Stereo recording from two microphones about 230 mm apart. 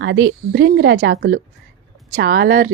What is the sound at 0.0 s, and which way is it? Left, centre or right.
Speech, right.